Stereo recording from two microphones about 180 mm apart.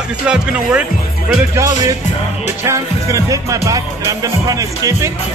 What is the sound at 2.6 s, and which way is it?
Music, 15° right (ahead or behind).